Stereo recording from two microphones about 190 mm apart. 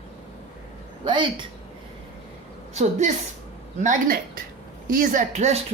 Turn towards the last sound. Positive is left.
turn(degrees=-35)  # may be behind; listen again after turning